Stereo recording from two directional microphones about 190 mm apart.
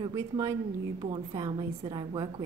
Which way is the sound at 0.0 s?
20° right (ahead or behind).